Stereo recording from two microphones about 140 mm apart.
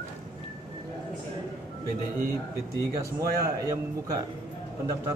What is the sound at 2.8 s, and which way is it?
Speech, 20° right (ahead or behind).